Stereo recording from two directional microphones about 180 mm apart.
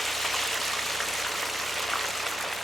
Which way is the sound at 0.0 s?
Centre (ahead or behind).